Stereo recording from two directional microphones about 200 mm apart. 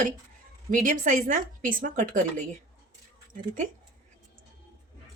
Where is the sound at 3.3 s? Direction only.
40° right (ahead or behind).